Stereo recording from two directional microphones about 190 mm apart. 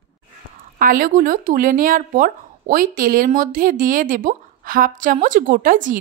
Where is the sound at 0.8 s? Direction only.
45° right (ahead or behind).